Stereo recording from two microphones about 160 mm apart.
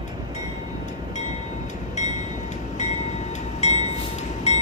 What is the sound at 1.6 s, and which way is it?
Train, 45° left (ahead or behind).